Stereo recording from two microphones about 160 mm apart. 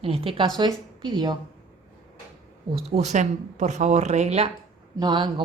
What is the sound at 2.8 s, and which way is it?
Speech, 45° right (ahead or behind).